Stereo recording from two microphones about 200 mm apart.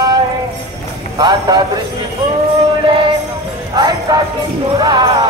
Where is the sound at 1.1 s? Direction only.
20° right (ahead or behind).